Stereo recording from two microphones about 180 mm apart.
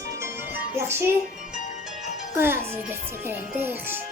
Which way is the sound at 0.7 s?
15° right (ahead or behind).